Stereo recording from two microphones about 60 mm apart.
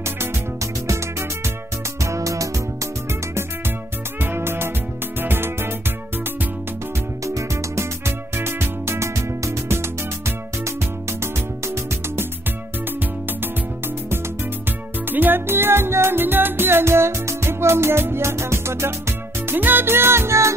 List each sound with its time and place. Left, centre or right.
0.0 s music: right
3.1 s music: right
7.2 s music: right
15.0 s music: right